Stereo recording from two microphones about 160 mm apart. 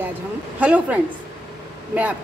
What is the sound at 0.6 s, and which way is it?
Speech, 10° right (ahead or behind).